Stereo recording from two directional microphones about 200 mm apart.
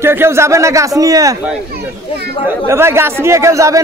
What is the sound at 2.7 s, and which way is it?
A man's voice, 10° right (ahead or behind).